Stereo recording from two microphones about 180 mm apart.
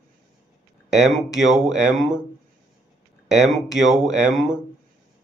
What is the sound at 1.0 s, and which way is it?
Speech, centre (ahead or behind).